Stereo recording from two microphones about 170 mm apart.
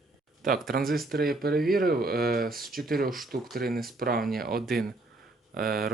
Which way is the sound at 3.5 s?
60° right (ahead or behind).